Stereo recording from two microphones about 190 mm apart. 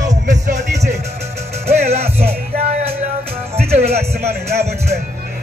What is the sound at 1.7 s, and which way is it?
Music, 35° right (ahead or behind).